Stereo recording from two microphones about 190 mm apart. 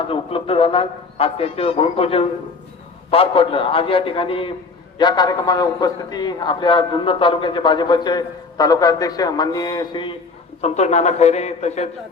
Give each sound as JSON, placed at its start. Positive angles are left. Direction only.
{"t": 0.0, "sound": "a man's voice", "side_deg": 30}
{"t": 10.6, "sound": "a man's voice", "side_deg": 35}